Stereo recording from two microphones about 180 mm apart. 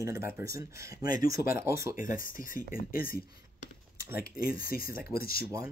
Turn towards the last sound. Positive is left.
turn(degrees=55)  # may be behind; listen again after turning